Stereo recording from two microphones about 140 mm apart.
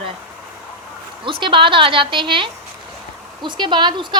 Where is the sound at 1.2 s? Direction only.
35° right (ahead or behind).